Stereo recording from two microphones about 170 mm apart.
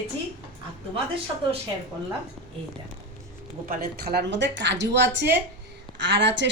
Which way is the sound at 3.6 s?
60° right (ahead or behind).